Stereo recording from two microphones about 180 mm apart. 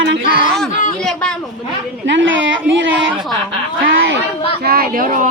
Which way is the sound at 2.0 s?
90° right.